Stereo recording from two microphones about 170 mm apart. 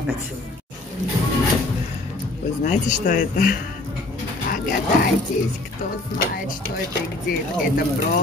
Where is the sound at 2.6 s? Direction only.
50° left (ahead or behind).